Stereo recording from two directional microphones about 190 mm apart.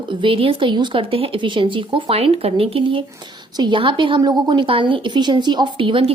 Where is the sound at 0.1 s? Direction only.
25° right (ahead or behind).